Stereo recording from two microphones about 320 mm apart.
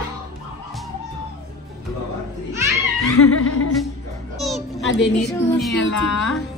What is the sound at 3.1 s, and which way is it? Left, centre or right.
Music, left.